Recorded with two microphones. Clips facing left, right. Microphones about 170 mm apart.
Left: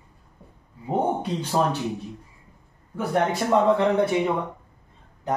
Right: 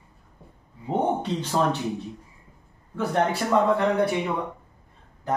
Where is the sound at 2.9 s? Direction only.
20° left (ahead or behind).